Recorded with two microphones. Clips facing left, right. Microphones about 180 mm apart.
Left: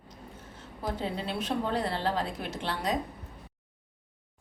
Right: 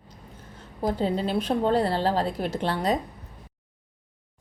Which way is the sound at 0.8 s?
35° right (ahead or behind).